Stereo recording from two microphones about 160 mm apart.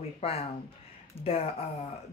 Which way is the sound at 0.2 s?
40° left (ahead or behind).